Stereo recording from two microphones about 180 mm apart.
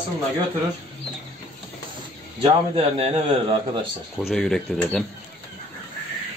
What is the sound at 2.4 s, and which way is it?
Speech, 30° right (ahead or behind).